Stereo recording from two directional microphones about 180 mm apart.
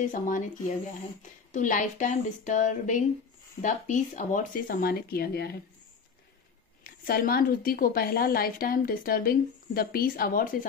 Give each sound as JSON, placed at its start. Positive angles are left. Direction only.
{"t": 0.1, "sound": "a woman's voice", "side_deg": 45}
{"t": 1.5, "sound": "a woman's voice", "side_deg": 45}
{"t": 6.8, "sound": "a woman's voice", "side_deg": 55}